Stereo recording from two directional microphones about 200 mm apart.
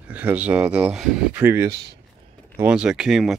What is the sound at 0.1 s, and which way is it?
Speech, 10° right (ahead or behind).